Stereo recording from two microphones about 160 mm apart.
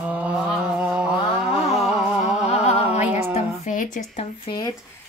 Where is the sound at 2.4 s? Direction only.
40° left (ahead or behind).